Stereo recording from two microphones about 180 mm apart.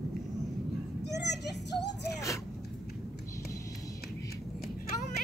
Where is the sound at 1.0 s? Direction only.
70° left (ahead or behind).